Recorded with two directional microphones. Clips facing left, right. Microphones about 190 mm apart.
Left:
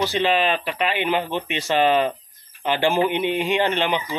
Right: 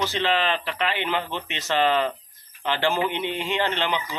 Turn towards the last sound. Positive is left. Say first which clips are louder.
# left 4 dB
turn(degrees=15)  # may be behind; listen again after turning